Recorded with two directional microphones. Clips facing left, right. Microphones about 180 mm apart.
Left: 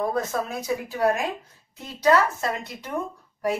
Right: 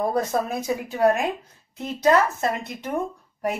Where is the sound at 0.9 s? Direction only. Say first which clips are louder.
Right 4 dB; 20° right (ahead or behind).